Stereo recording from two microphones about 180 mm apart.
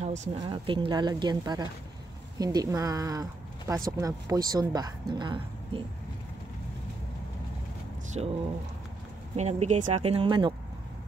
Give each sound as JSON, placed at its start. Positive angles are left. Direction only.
{"t": 0.0, "sound": "a woman's voice", "side_deg": -40}
{"t": 8.2, "sound": "speech", "side_deg": -30}
{"t": 9.4, "sound": "speech", "side_deg": -40}